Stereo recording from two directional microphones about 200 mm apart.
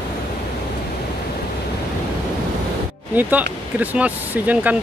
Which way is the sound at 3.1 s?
10° right (ahead or behind).